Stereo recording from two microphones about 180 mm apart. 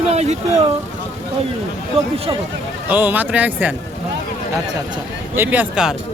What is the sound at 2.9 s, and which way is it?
Speech, 10° right (ahead or behind).